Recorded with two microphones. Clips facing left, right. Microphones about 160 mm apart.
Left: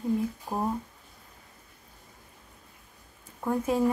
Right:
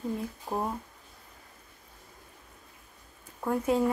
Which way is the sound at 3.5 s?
25° left (ahead or behind).